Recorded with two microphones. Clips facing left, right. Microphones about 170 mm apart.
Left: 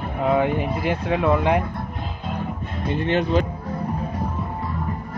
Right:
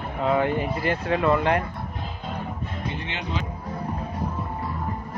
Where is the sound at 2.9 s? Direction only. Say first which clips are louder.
Left 13 dB; 50° left (ahead or behind).